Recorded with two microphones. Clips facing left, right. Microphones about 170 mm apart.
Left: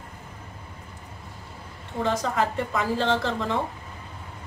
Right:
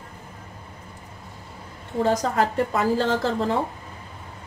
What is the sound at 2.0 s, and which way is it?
A woman's voice, 40° right (ahead or behind).